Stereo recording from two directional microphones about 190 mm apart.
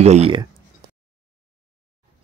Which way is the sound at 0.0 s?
35° right (ahead or behind).